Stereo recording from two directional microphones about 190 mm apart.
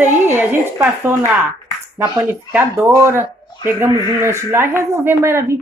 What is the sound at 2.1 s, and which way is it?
Speech, 10° right (ahead or behind).